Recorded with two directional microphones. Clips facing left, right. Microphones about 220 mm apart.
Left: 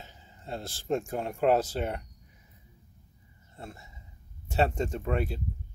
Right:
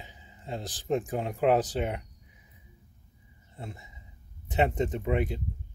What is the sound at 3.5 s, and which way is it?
Speech, 15° right (ahead or behind).